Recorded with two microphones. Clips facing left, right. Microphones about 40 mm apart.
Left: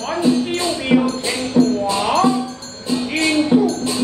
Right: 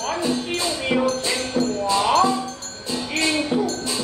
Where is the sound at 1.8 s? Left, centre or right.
Left.